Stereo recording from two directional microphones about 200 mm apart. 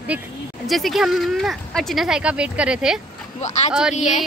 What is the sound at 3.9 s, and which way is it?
Speech, 35° left (ahead or behind).